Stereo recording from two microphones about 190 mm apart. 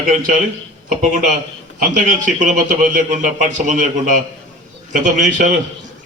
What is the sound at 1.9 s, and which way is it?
A man's voice, 40° right (ahead or behind).